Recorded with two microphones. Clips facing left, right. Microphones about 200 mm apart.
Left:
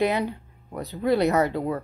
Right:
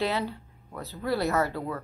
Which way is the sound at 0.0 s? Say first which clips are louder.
Left 5 dB; 15° left (ahead or behind).